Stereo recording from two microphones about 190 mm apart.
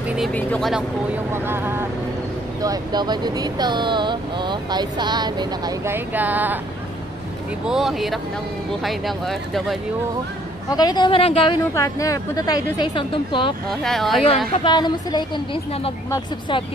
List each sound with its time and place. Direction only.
0.3 s speech: 5° left (ahead or behind)
1.3 s speech: 10° right (ahead or behind)
7.6 s speech: centre (ahead or behind)
10.7 s a woman's voice: 20° left (ahead or behind)
13.7 s speech: centre (ahead or behind)
14.5 s a woman's voice: 25° left (ahead or behind)